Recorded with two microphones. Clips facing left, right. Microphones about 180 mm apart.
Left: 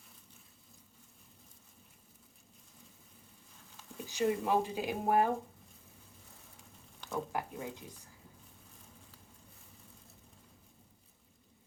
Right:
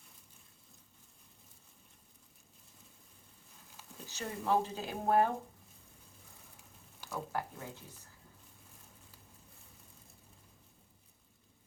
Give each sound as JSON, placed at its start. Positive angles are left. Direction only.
{"t": 4.0, "sound": "speech", "side_deg": 15}
{"t": 7.1, "sound": "speech", "side_deg": 15}